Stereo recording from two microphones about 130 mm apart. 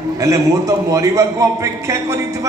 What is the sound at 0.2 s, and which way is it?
A man's voice, 25° right (ahead or behind).